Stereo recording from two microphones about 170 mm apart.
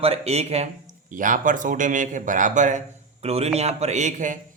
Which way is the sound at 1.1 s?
50° right (ahead or behind).